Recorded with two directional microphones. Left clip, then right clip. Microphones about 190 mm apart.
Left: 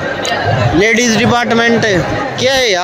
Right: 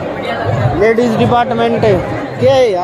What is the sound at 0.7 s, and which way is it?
Speech, 55° left (ahead or behind).